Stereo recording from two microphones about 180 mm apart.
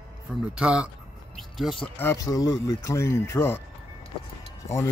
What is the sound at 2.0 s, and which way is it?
Speech, 15° left (ahead or behind).